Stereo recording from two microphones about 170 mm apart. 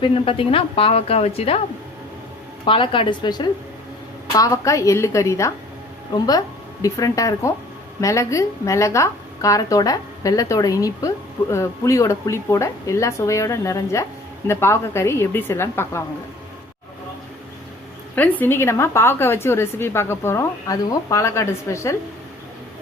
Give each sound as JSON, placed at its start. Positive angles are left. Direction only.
{"t": 0.0, "sound": "a woman's voice", "side_deg": 35}
{"t": 2.6, "sound": "a woman's voice", "side_deg": 30}
{"t": 18.1, "sound": "speech", "side_deg": 10}